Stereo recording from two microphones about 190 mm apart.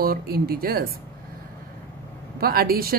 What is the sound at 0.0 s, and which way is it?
Speech, 55° right (ahead or behind).